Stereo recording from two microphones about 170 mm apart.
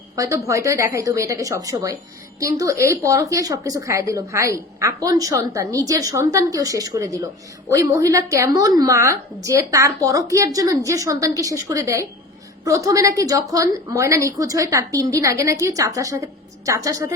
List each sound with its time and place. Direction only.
0.2 s a woman's voice: 20° right (ahead or behind)